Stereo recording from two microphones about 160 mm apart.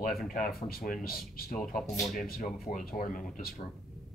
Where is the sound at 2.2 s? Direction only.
55° left (ahead or behind).